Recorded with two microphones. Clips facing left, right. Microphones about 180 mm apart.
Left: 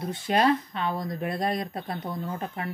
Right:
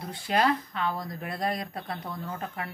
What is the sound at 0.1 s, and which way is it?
A woman's voice, 25° left (ahead or behind).